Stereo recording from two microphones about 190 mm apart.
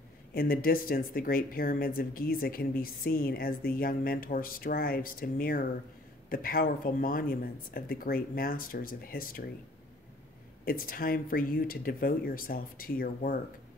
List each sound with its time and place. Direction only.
0.3 s speech: 50° left (ahead or behind)
10.6 s speech: 50° left (ahead or behind)